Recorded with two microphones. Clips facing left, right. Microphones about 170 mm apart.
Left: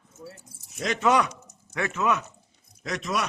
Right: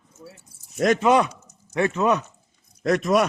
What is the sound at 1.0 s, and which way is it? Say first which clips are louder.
Speech: right 4 dB; 25° right (ahead or behind).